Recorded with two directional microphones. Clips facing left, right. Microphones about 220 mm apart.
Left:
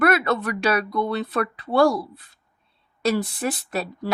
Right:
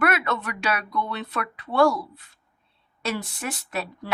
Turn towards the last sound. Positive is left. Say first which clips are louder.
# left 4 dB
turn(degrees=35)  # may be behind; listen again after turning